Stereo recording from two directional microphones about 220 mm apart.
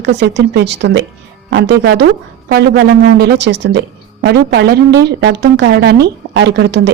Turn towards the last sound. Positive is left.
turn(degrees=-50)  # may be behind; listen again after turning